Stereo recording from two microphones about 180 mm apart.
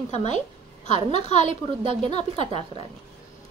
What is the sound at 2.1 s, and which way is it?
Speech, 40° left (ahead or behind).